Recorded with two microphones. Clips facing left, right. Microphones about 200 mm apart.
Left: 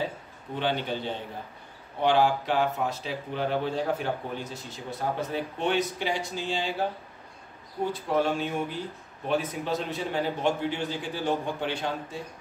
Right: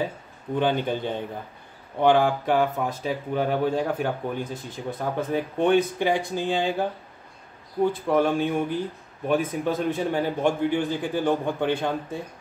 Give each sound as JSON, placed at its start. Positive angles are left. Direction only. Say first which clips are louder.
{"t": 0.6, "sound": "speech", "louder": "right 5 dB", "side_deg": -50}
{"t": 7.9, "sound": "speech", "louder": "right 1 dB", "side_deg": -55}